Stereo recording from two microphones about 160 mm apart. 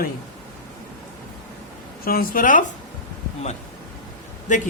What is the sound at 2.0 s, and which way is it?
Speech, 65° left (ahead or behind).